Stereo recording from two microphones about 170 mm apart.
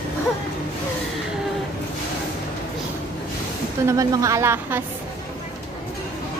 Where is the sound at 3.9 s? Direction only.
20° right (ahead or behind).